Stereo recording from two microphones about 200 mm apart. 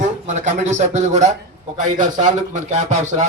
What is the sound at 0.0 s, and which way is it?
Speech, 35° right (ahead or behind).